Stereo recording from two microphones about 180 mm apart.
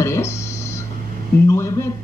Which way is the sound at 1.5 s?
15° left (ahead or behind).